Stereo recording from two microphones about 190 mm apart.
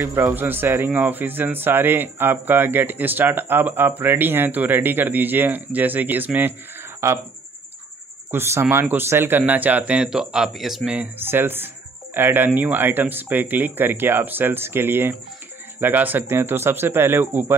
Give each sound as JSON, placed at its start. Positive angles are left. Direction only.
{"t": 0.0, "sound": "speech", "side_deg": -10}
{"t": 8.3, "sound": "speech", "side_deg": -10}